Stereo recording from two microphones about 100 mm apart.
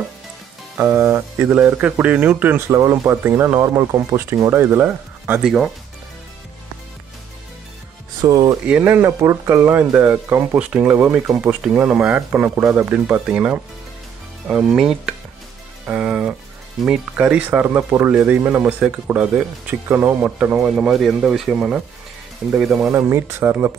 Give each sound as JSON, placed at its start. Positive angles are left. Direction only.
{"t": 0.7, "sound": "speech", "side_deg": -25}
{"t": 1.5, "sound": "speech", "side_deg": -15}
{"t": 2.7, "sound": "speech", "side_deg": -30}
{"t": 5.4, "sound": "speech", "side_deg": -5}
{"t": 8.3, "sound": "speech", "side_deg": -35}
{"t": 8.6, "sound": "speech", "side_deg": -15}
{"t": 9.8, "sound": "speech", "side_deg": -15}
{"t": 15.9, "sound": "music", "side_deg": -15}
{"t": 16.8, "sound": "speech", "side_deg": -10}
{"t": 20.2, "sound": "speech", "side_deg": -10}
{"t": 22.8, "sound": "speech", "side_deg": -25}